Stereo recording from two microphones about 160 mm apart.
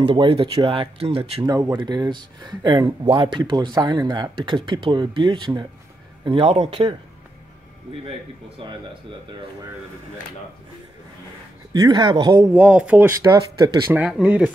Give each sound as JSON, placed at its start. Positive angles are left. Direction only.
{"t": 0.0, "sound": "speech", "side_deg": -35}
{"t": 1.4, "sound": "speech", "side_deg": -20}
{"t": 11.7, "sound": "speech", "side_deg": -25}
{"t": 12.5, "sound": "speech", "side_deg": -10}
{"t": 13.2, "sound": "speech", "side_deg": -20}
{"t": 13.9, "sound": "speech", "side_deg": -10}